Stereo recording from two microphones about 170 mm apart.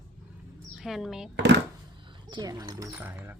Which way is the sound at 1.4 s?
90° right.